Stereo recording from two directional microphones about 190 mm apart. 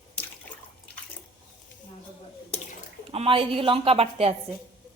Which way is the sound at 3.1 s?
30° right (ahead or behind).